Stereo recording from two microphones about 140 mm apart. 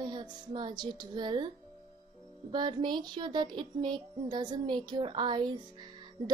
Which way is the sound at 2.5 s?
30° right (ahead or behind).